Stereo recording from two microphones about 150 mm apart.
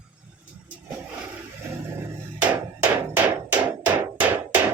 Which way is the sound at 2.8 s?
10° right (ahead or behind).